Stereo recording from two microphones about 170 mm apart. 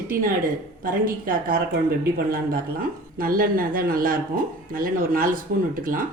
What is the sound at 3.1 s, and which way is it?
Speech, 60° right (ahead or behind).